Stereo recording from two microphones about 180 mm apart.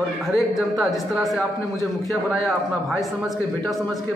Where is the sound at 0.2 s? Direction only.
Centre (ahead or behind).